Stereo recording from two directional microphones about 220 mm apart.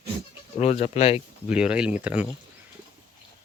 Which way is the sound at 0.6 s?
30° left (ahead or behind).